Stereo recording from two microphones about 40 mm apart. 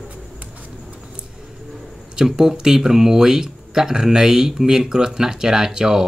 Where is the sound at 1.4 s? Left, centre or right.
Centre.